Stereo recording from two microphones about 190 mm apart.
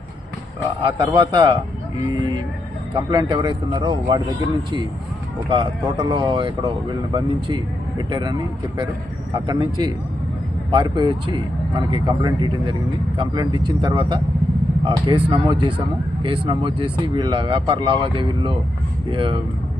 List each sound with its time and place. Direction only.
0.8 s speech: 25° right (ahead or behind)
2.9 s speech: 20° right (ahead or behind)
5.5 s speech: 25° right (ahead or behind)